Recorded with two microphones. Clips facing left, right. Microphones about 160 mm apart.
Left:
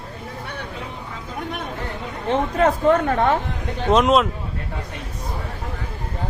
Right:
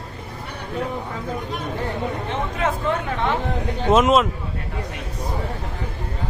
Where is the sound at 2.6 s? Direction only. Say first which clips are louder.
Left 7 dB; 40° left (ahead or behind).